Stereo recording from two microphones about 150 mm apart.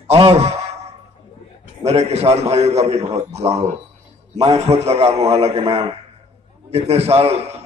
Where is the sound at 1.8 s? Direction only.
45° right (ahead or behind).